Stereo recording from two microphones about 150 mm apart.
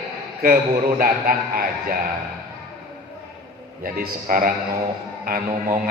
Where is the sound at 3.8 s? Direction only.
70° right (ahead or behind).